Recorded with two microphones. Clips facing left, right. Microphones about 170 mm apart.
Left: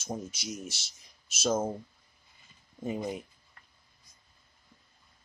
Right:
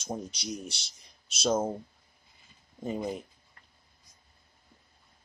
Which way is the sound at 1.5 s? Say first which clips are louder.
Right 1 dB; 10° right (ahead or behind).